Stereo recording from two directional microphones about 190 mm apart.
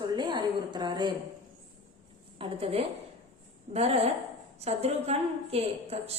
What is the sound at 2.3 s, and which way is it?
A woman's voice, 30° right (ahead or behind).